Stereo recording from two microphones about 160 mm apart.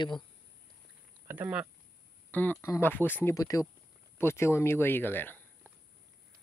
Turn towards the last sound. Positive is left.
turn(degrees=10)  # may be behind; listen again after turning